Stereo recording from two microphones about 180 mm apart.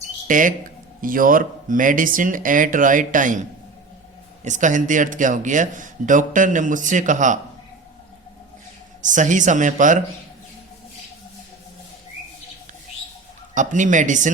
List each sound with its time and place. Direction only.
0.3 s a man's voice: 45° right (ahead or behind)
4.4 s a man's voice: 45° right (ahead or behind)
9.0 s a man's voice: 45° right (ahead or behind)
13.5 s a man's voice: 45° right (ahead or behind)